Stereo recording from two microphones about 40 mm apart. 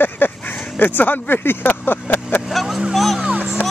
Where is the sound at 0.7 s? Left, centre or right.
Left.